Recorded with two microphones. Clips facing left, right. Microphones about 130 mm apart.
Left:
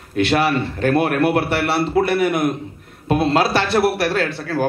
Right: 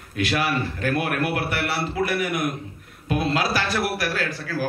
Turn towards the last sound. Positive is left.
turn(degrees=25)  # may be behind; listen again after turning